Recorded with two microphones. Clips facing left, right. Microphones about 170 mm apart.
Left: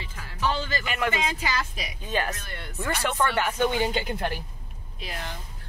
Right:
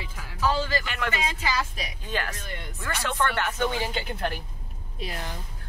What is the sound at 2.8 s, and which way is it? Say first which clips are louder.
Speech: left 2 dB; 15° left (ahead or behind).